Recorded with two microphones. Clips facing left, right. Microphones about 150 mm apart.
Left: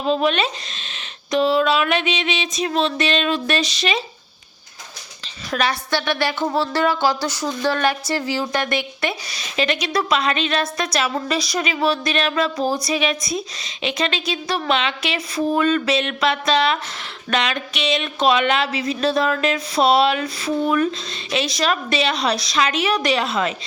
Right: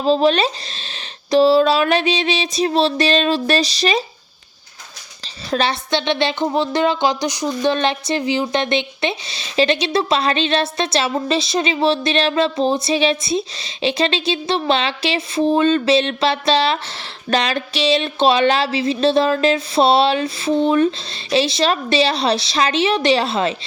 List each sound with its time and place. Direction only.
0.0 s speech: 30° right (ahead or behind)
5.5 s a woman's voice: 30° right (ahead or behind)